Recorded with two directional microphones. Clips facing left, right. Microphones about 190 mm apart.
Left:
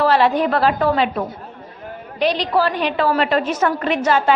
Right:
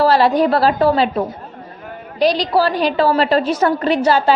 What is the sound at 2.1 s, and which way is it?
A woman's voice, 35° right (ahead or behind).